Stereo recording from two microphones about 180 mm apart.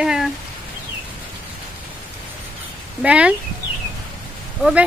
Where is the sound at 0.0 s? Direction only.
5° right (ahead or behind).